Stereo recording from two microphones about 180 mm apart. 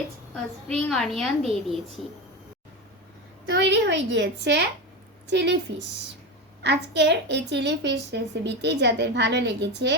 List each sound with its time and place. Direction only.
0.7 s a woman's voice: 5° left (ahead or behind)
3.5 s a woman's voice: 75° right (ahead or behind)
6.6 s a woman's voice: 75° right (ahead or behind)